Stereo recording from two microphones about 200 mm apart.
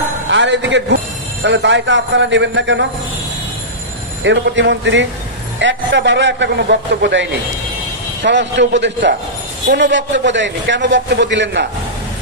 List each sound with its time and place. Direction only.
0.3 s a man's voice: 65° right (ahead or behind)
4.2 s a man's voice: 65° right (ahead or behind)